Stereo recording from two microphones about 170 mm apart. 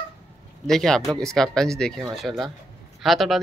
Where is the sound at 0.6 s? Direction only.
5° left (ahead or behind).